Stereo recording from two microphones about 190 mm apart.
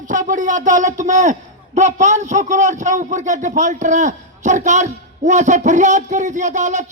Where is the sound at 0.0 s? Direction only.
45° right (ahead or behind).